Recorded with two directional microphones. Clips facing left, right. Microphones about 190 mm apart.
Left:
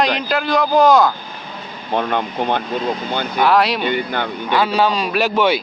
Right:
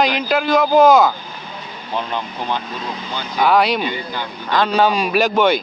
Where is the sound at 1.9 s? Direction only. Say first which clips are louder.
Left 5 dB; 60° left (ahead or behind).